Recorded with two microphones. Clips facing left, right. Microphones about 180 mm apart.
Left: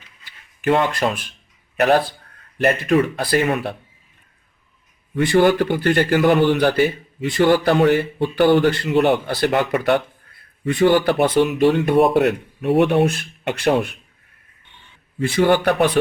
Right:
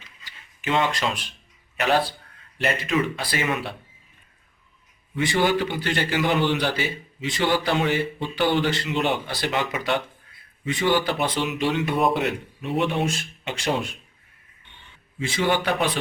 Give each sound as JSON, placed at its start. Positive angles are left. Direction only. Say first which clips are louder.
{"t": 0.6, "sound": "speech", "louder": "left 6 dB", "side_deg": 55}
{"t": 5.1, "sound": "a man's voice", "louder": "left 7 dB", "side_deg": 55}
{"t": 15.2, "sound": "speech", "louder": "left 7 dB", "side_deg": 55}